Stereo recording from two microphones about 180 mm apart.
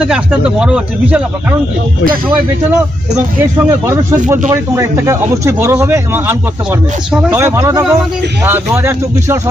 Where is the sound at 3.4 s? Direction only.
20° right (ahead or behind).